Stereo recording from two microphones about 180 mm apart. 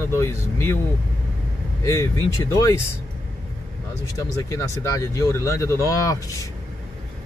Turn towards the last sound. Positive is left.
turn(degrees=15)  # may be behind; listen again after turning